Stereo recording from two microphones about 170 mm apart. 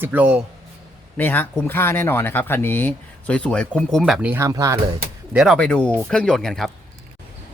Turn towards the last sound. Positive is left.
turn(degrees=0)  # may be behind; listen again after turning